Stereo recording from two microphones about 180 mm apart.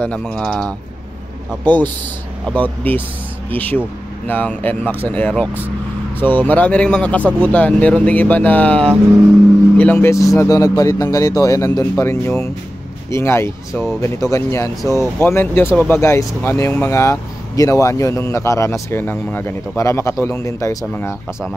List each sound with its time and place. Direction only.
0.0 s speech: 5° left (ahead or behind)